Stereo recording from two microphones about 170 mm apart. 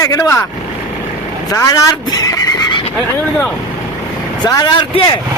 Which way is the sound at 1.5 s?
20° left (ahead or behind).